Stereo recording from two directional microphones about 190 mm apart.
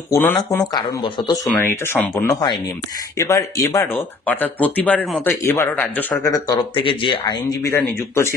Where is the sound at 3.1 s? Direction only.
15° left (ahead or behind).